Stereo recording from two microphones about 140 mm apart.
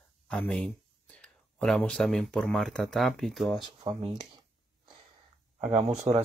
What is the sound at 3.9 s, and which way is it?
Speech, 40° right (ahead or behind).